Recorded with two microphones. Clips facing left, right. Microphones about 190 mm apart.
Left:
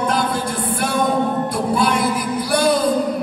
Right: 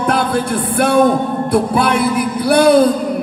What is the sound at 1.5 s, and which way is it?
A man's voice, 60° right (ahead or behind).